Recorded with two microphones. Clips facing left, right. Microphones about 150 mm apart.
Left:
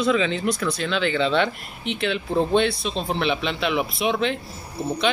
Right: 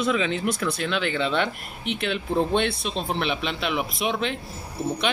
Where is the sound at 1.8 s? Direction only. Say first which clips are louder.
Left 2 dB; 50° right (ahead or behind).